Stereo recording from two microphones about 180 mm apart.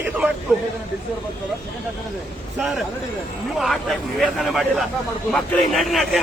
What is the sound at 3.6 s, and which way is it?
A man's voice, centre (ahead or behind).